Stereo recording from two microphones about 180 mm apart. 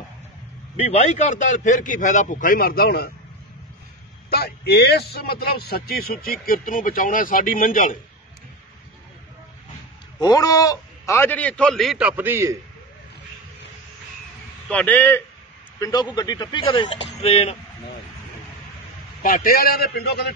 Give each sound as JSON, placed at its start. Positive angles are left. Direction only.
{"t": 0.7, "sound": "a man's voice", "side_deg": 35}
{"t": 4.3, "sound": "speech", "side_deg": 65}
{"t": 10.2, "sound": "a man's voice", "side_deg": 20}
{"t": 14.7, "sound": "a man's voice", "side_deg": 10}
{"t": 15.8, "sound": "speech", "side_deg": 20}
{"t": 19.2, "sound": "speech", "side_deg": 50}